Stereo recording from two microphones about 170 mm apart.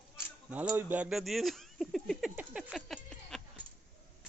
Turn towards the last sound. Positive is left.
turn(degrees=0)  # may be behind; listen again after turning